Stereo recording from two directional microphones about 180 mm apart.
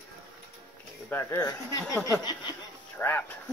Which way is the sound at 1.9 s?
15° left (ahead or behind).